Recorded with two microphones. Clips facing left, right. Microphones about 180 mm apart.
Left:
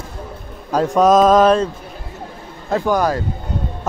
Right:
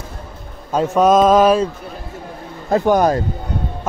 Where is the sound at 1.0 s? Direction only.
Centre (ahead or behind).